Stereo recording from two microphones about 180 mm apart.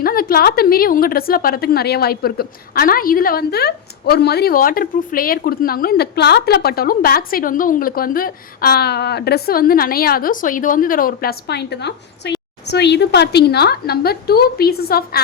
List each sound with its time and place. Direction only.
0.0 s a woman's voice: 55° left (ahead or behind)